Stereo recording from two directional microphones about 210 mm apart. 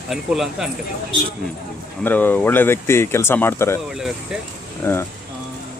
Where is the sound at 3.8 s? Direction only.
Centre (ahead or behind).